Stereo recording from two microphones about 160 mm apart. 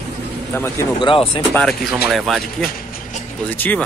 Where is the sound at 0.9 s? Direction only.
30° left (ahead or behind).